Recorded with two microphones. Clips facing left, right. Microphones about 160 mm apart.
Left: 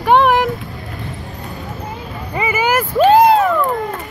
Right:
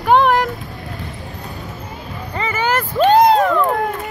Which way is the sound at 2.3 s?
10° left (ahead or behind).